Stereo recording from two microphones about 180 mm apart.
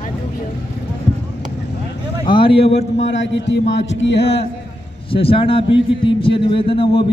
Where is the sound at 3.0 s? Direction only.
85° left.